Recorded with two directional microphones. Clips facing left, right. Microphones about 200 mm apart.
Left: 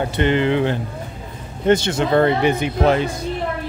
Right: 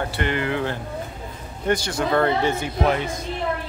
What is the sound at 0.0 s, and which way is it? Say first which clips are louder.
Speech: left 7 dB; 20° left (ahead or behind).